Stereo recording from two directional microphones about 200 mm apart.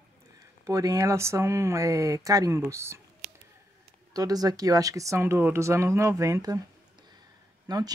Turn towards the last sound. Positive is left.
turn(degrees=-20)  # may be behind; listen again after turning